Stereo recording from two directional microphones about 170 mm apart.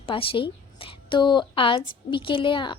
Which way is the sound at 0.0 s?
30° left (ahead or behind).